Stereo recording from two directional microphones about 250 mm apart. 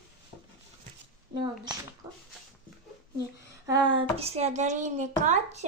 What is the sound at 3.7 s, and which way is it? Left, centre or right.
Speech, centre.